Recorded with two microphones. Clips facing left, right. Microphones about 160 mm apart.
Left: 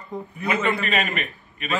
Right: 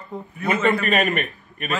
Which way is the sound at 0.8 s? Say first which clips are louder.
Right 4 dB; 50° right (ahead or behind).